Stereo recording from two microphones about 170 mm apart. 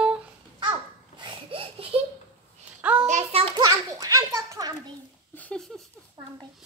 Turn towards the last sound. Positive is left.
turn(degrees=5)  # may be behind; listen again after turning